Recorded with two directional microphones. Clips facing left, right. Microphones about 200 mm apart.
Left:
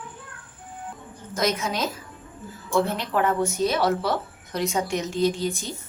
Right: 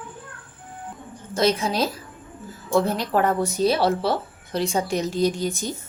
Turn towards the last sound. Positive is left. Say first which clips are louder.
# right 1 dB
turn(degrees=-45)  # may be behind; listen again after turning